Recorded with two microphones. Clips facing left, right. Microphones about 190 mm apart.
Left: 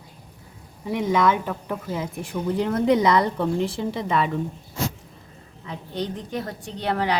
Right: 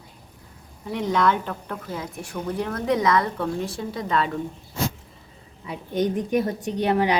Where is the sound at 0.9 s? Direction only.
10° left (ahead or behind).